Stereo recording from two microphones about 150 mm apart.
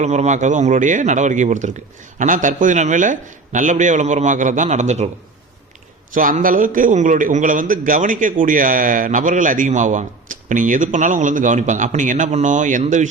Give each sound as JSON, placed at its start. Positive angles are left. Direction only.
{"t": 0.0, "sound": "a man's voice", "side_deg": -50}
{"t": 6.1, "sound": "a man's voice", "side_deg": -65}